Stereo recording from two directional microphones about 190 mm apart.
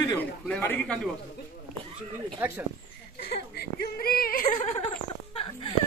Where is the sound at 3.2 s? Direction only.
60° left (ahead or behind).